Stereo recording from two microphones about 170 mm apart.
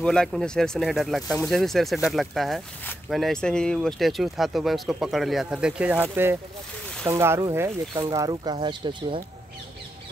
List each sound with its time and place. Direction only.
0.0 s speech: 5° left (ahead or behind)
7.1 s speech: 15° right (ahead or behind)